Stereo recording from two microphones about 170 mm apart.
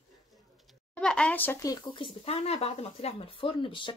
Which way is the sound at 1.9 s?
35° left (ahead or behind).